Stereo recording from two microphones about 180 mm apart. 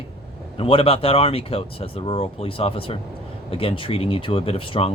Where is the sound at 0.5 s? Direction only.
30° left (ahead or behind).